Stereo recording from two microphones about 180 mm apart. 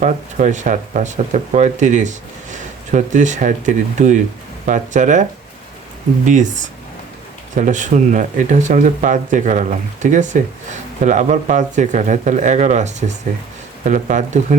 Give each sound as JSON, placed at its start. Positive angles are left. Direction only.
{"t": 0.0, "sound": "speech", "side_deg": -40}
{"t": 6.2, "sound": "speech", "side_deg": -45}
{"t": 7.5, "sound": "speech", "side_deg": -45}